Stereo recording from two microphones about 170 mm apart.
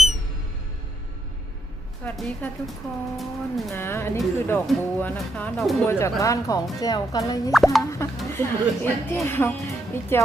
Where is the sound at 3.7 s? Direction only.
15° left (ahead or behind).